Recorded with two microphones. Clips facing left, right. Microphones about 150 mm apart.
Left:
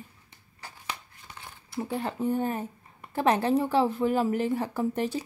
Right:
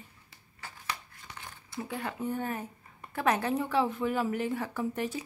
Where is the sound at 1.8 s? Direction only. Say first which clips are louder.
Left 5 dB; 30° left (ahead or behind).